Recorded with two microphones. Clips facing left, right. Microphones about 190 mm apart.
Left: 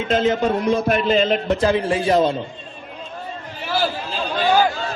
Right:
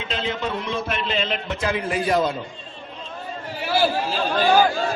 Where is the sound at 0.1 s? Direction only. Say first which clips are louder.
Left 9 dB; 45° left (ahead or behind); by 2.4 s 25° left (ahead or behind).